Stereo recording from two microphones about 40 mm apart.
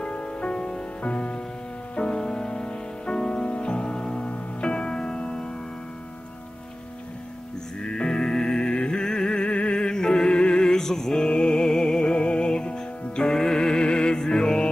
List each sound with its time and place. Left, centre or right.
0.0 s music: left
7.8 s music: left
11.2 s music: left